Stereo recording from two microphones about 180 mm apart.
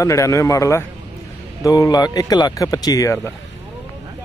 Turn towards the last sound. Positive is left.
turn(degrees=20)  # may be behind; listen again after turning